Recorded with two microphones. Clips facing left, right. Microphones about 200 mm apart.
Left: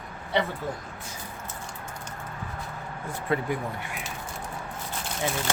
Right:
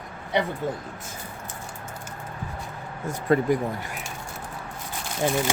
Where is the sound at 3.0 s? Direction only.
40° right (ahead or behind).